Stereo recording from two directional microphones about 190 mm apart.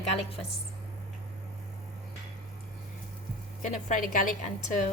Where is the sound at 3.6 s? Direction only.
45° left (ahead or behind).